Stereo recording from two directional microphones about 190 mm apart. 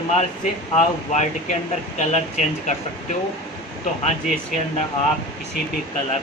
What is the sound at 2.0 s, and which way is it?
Speech, 40° left (ahead or behind).